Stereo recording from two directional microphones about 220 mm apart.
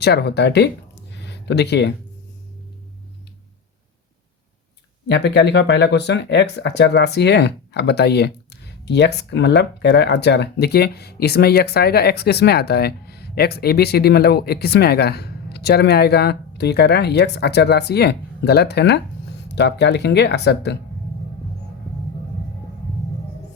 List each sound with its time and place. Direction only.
0.0 s speech: 50° left (ahead or behind)
1.2 s a sound: 50° left (ahead or behind)
5.0 s speech: 50° left (ahead or behind)